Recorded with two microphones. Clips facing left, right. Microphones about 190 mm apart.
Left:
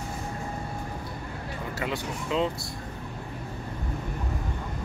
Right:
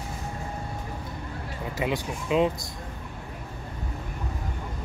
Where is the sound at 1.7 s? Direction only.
15° right (ahead or behind).